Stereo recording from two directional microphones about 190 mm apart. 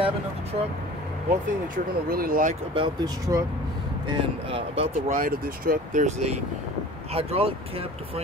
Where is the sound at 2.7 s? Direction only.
25° right (ahead or behind).